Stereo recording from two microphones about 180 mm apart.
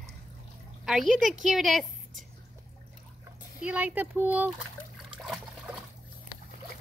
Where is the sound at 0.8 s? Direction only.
Centre (ahead or behind).